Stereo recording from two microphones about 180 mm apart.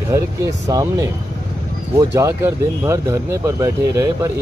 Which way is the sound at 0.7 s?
20° right (ahead or behind).